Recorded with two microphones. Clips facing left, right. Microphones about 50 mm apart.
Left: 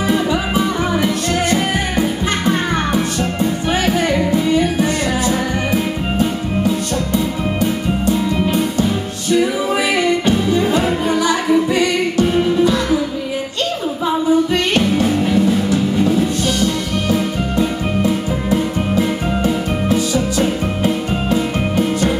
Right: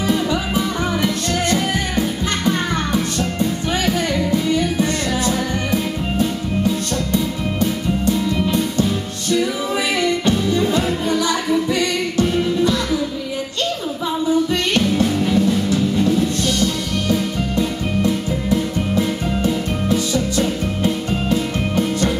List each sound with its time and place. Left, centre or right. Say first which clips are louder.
0.1 s music: left 2 dB; centre
14.2 s music: left 2 dB; left